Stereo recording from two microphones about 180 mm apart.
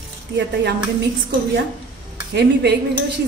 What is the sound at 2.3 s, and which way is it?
Speech, 70° right (ahead or behind).